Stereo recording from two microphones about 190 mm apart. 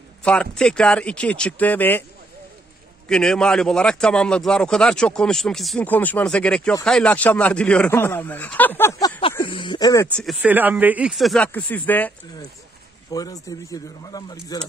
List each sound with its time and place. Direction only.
0.2 s a man's voice: 5° left (ahead or behind)
3.1 s a man's voice: 5° left (ahead or behind)
9.4 s speech: 25° left (ahead or behind)
10.4 s a man's voice: 10° right (ahead or behind); by 12.1 s 10° left (ahead or behind)
13.1 s speech: 20° left (ahead or behind)